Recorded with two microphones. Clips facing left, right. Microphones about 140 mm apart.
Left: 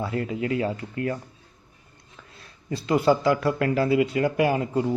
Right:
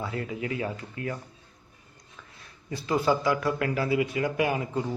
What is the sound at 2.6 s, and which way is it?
Speech, 25° left (ahead or behind).